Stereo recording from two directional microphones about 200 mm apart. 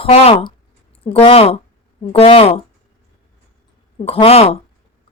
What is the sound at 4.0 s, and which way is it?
Speech, 30° left (ahead or behind).